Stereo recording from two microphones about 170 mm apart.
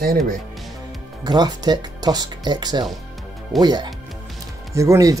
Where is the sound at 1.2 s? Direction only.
25° right (ahead or behind).